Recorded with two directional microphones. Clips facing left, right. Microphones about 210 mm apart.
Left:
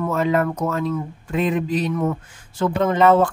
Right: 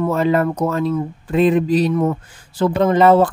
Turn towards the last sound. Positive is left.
turn(degrees=-35)  # may be behind; listen again after turning